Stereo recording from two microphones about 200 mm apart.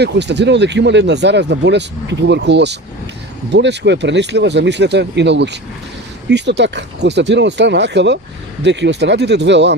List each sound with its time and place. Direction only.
0.0 s speech: 60° right (ahead or behind)